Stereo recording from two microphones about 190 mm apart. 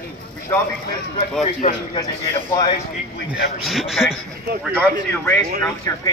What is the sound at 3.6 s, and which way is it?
A man's voice, centre (ahead or behind).